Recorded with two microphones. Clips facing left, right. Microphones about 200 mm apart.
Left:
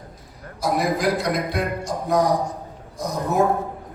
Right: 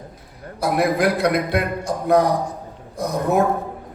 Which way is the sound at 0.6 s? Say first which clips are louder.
Right 3 dB; 60° right (ahead or behind).